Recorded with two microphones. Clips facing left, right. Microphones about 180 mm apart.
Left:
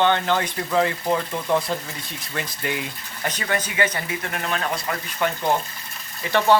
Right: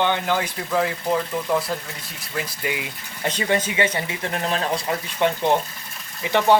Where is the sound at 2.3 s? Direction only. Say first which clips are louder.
Right 1 dB; 5° right (ahead or behind).